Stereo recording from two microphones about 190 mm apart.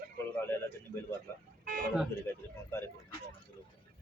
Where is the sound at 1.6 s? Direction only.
45° right (ahead or behind).